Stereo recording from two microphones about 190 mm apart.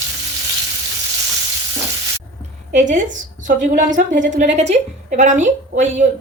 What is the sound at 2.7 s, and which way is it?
A woman's voice, 40° right (ahead or behind).